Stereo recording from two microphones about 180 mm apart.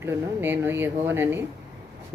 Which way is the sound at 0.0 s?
10° right (ahead or behind).